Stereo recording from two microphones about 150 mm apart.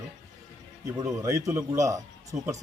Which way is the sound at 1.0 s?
20° right (ahead or behind).